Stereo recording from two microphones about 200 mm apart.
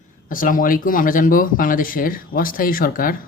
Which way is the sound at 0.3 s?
45° left (ahead or behind).